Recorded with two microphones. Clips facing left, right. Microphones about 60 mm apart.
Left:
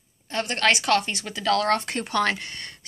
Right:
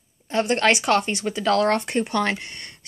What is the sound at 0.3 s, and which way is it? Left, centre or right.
A woman's voice, centre.